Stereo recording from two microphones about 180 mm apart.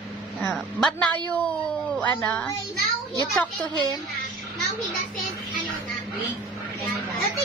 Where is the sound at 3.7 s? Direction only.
25° right (ahead or behind).